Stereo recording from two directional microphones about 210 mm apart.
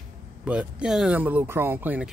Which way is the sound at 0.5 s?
5° right (ahead or behind).